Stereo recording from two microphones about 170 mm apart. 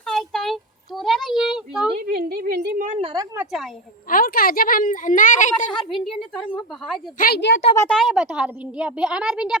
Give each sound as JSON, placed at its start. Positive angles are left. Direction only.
{"t": 0.0, "sound": "a sound", "side_deg": 0}
{"t": 2.0, "sound": "a woman's voice", "side_deg": -65}
{"t": 3.0, "sound": "speech", "side_deg": -25}
{"t": 3.3, "sound": "a woman's voice", "side_deg": 0}
{"t": 4.1, "sound": "speech", "side_deg": 60}
{"t": 7.2, "sound": "a woman's voice", "side_deg": 70}
{"t": 7.8, "sound": "a woman's voice", "side_deg": 5}